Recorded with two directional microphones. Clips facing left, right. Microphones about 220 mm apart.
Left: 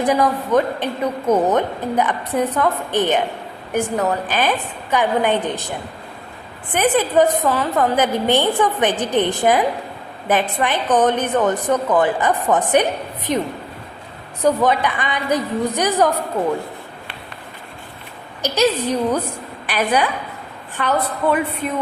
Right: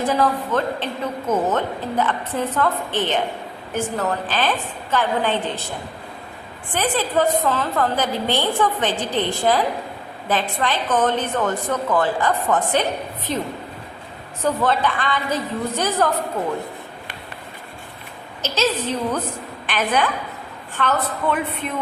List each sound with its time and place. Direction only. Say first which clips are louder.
0.0 s a woman's voice: left 2 dB; 15° left (ahead or behind)
6.7 s a woman's voice: left 5 dB; 20° left (ahead or behind)
14.4 s a woman's voice: left 3 dB; 15° left (ahead or behind)
18.4 s a woman's voice: left 4 dB; 15° left (ahead or behind)